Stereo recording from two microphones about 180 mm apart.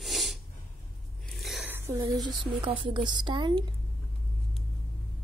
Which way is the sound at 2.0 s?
25° right (ahead or behind).